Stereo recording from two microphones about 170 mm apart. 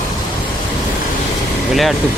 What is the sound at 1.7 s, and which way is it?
Speech, centre (ahead or behind).